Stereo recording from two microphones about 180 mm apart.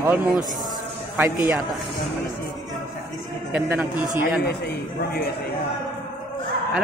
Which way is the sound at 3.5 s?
5° right (ahead or behind).